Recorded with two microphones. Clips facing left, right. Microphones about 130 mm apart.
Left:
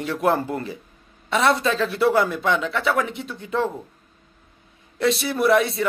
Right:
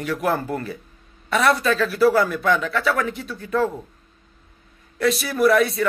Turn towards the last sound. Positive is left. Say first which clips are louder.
# right 1 dB
turn(degrees=25)  # may be behind; listen again after turning